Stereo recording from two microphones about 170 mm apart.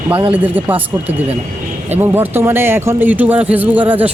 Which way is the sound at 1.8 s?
10° right (ahead or behind).